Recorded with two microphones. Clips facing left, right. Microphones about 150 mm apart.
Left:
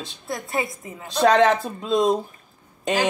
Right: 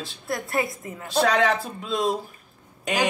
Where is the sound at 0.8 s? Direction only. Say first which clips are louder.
Left 6 dB; 20° left (ahead or behind).